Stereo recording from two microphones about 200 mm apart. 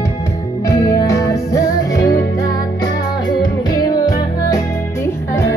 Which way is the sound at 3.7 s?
20° left (ahead or behind).